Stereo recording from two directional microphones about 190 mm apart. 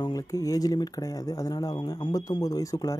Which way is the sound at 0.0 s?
20° left (ahead or behind).